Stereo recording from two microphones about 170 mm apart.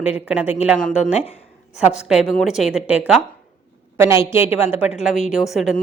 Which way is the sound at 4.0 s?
15° right (ahead or behind).